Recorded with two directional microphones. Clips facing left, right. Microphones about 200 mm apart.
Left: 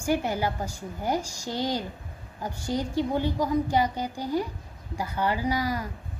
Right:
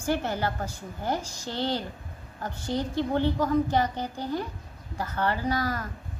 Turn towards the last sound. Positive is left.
turn(degrees=10)  # may be behind; listen again after turning